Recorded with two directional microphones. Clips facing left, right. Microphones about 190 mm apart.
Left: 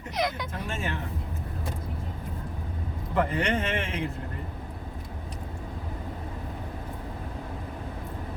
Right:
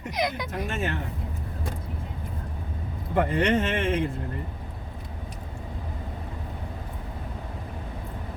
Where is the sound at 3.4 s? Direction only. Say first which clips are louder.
Right 4 dB; 55° right (ahead or behind).